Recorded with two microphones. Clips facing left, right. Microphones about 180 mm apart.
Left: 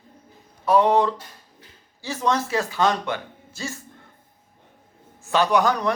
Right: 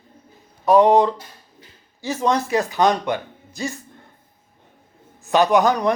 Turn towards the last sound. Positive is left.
turn(degrees=-20)  # may be behind; listen again after turning